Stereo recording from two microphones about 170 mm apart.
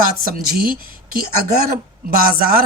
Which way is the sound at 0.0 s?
60° right (ahead or behind).